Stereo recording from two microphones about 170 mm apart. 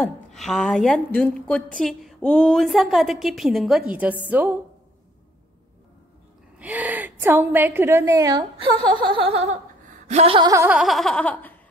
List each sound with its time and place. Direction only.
0.3 s a woman's voice: centre (ahead or behind)
6.6 s a woman's voice: 10° right (ahead or behind); by 9.6 s 35° right (ahead or behind)
10.0 s a sound: 35° right (ahead or behind)
10.7 s a woman's voice: centre (ahead or behind)